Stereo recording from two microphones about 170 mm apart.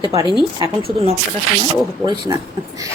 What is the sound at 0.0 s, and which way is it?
Speech, 20° right (ahead or behind).